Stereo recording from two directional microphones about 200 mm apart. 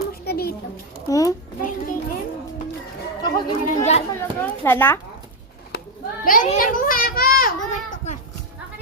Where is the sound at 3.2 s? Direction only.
20° left (ahead or behind).